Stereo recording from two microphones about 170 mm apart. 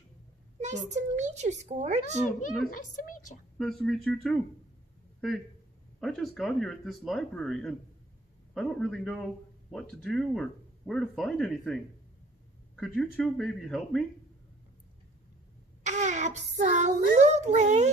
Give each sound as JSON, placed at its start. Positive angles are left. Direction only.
{"t": 0.6, "sound": "a child's voice", "side_deg": -45}
{"t": 3.5, "sound": "speech", "side_deg": 0}
{"t": 5.9, "sound": "speech", "side_deg": 0}
{"t": 15.8, "sound": "a sound", "side_deg": -45}